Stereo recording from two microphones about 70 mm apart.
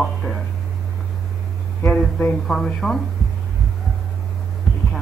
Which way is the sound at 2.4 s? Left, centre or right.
Centre.